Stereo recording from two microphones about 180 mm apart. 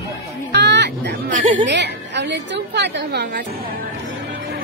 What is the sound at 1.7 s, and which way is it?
A woman's voice, 75° right (ahead or behind).